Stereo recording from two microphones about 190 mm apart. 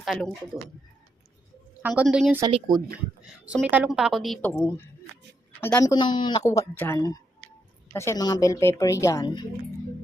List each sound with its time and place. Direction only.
0.0 s a woman's voice: centre (ahead or behind)
1.8 s a woman's voice: 5° right (ahead or behind)
2.5 s speech: 20° right (ahead or behind)
3.5 s a woman's voice: 5° right (ahead or behind)
4.4 s speech: 10° left (ahead or behind)